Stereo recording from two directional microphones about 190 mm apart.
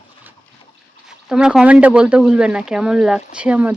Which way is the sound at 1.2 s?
5° right (ahead or behind).